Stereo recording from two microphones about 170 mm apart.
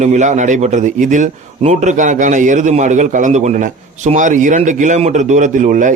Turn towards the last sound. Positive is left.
turn(degrees=-50)  # may be behind; listen again after turning